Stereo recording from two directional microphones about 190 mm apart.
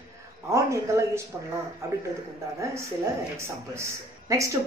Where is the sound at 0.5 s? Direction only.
15° right (ahead or behind).